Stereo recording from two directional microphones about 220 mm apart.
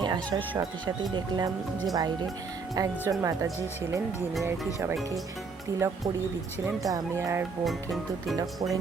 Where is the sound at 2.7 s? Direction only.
15° right (ahead or behind).